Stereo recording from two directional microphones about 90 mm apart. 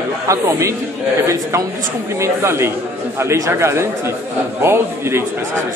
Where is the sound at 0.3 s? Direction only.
35° right (ahead or behind).